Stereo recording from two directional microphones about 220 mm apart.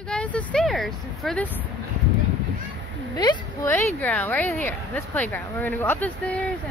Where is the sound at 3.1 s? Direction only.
20° left (ahead or behind).